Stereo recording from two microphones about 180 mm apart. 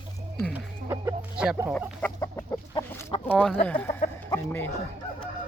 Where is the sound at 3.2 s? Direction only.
10° left (ahead or behind).